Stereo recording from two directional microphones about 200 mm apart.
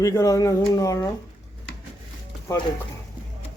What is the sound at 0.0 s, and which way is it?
A man's voice, 15° left (ahead or behind).